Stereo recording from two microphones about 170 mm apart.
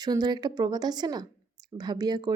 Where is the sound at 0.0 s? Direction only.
25° right (ahead or behind).